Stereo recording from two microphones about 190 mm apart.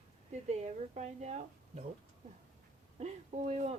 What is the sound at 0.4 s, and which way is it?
Speech, 35° right (ahead or behind).